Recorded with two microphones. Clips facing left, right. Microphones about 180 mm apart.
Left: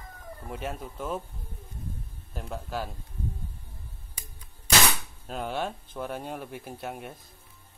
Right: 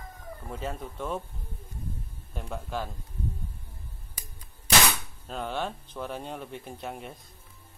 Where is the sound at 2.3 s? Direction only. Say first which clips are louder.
Even; centre (ahead or behind).